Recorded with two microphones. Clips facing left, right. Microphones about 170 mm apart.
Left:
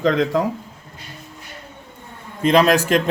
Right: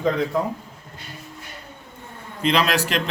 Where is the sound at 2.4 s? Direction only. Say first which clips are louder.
Left 6 dB; 45° left (ahead or behind).